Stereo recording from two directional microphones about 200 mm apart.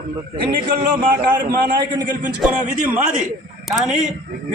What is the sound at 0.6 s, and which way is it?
Speech, 45° right (ahead or behind).